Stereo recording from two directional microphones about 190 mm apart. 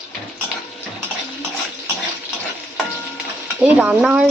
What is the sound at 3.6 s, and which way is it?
Speech, 5° right (ahead or behind).